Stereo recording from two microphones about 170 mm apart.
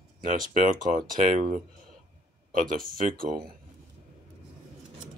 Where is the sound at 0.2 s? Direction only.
50° right (ahead or behind).